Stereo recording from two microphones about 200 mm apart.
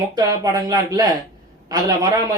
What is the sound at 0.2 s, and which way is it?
A man's voice, 20° right (ahead or behind).